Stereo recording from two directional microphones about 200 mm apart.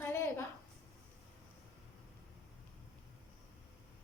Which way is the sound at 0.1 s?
15° left (ahead or behind).